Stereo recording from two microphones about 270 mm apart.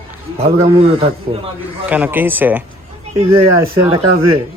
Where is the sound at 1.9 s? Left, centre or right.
Centre.